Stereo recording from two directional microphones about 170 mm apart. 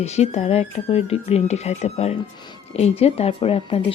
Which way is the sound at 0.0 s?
40° left (ahead or behind).